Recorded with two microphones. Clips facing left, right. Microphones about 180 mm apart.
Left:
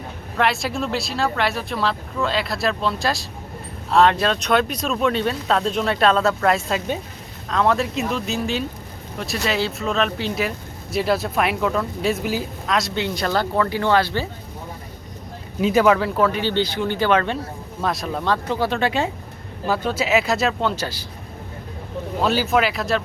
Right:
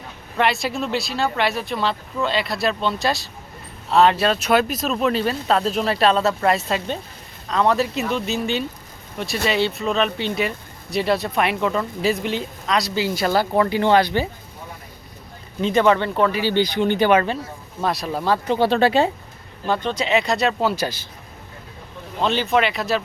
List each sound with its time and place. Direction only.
0.3 s speech: centre (ahead or behind); by 14.3 s 15° right (ahead or behind)
15.6 s speech: 5° left (ahead or behind)
16.4 s speech: 10° right (ahead or behind)
18.4 s speech: 25° right (ahead or behind)
19.6 s speech: 5° left (ahead or behind); by 21.1 s 15° right (ahead or behind)
22.2 s speech: 5° left (ahead or behind)